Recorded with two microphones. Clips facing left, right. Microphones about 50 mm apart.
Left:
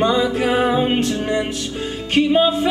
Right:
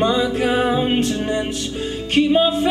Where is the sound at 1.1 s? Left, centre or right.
Left.